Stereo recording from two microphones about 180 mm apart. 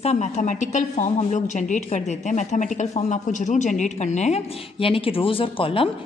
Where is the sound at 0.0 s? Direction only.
40° left (ahead or behind).